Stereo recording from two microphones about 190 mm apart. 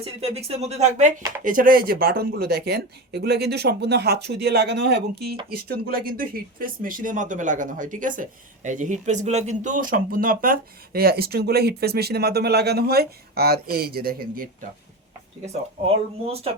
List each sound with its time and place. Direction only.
0.0 s speech: 30° right (ahead or behind); by 14.4 s 50° right (ahead or behind)
16.2 s speech: 30° right (ahead or behind)